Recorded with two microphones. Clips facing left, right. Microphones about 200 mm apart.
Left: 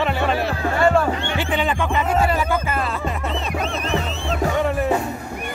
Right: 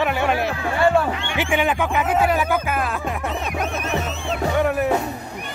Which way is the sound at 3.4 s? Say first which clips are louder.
Even; 15° right (ahead or behind).